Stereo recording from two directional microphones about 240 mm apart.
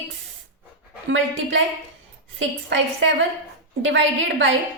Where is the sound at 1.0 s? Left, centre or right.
Right.